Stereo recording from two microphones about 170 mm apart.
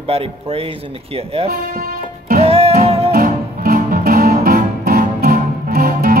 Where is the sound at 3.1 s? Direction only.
60° right (ahead or behind).